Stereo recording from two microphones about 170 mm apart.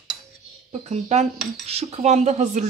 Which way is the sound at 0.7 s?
40° right (ahead or behind).